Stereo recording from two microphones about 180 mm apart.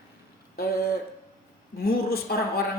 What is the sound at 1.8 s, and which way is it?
Speech, 60° left (ahead or behind).